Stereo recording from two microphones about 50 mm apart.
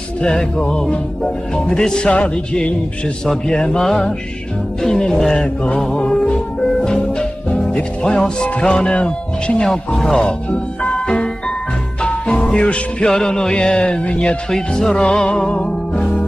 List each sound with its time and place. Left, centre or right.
0.2 s music: centre
2.0 s speech: left
3.3 s music: centre
4.8 s music: centre
9.7 s music: centre
12.0 s music: left
13.0 s music: centre
13.5 s speech: left
14.5 s music: centre